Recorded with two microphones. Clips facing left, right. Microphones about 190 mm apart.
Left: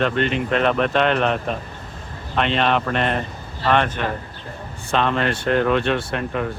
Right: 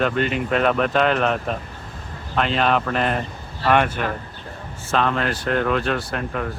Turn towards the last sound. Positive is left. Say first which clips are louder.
# left 2 dB
turn(degrees=0)  # may be behind; listen again after turning